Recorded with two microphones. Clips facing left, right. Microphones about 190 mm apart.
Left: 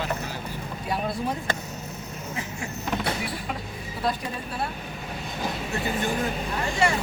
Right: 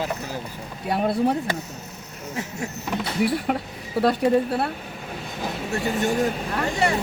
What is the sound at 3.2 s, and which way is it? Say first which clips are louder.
Speech: right 10 dB; 65° right (ahead or behind).